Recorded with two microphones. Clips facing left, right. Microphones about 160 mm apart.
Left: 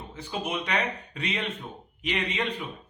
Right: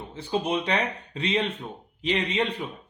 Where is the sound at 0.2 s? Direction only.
30° right (ahead or behind).